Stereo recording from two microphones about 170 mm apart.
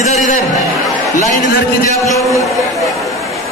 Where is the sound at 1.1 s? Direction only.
50° left (ahead or behind).